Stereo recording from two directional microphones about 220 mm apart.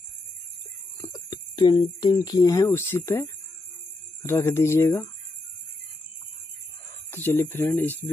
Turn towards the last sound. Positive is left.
turn(degrees=10)  # may be behind; listen again after turning